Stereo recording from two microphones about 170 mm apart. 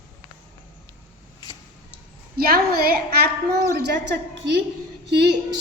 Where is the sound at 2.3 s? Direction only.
60° right (ahead or behind).